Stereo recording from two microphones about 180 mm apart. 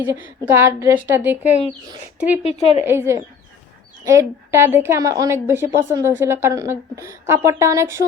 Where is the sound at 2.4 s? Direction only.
35° left (ahead or behind).